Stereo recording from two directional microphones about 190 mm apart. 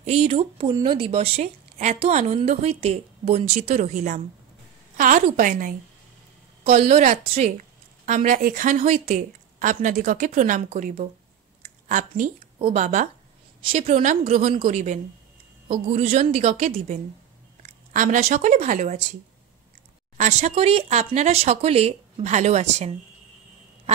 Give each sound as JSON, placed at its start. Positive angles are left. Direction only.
{"t": 0.0, "sound": "a woman's voice", "side_deg": -35}
{"t": 6.6, "sound": "a woman's voice", "side_deg": -35}
{"t": 11.6, "sound": "a sound", "side_deg": -45}
{"t": 12.5, "sound": "a woman's voice", "side_deg": -30}
{"t": 12.8, "sound": "a woman's voice", "side_deg": -40}
{"t": 13.6, "sound": "a woman's voice", "side_deg": -30}
{"t": 20.2, "sound": "a woman's voice", "side_deg": -40}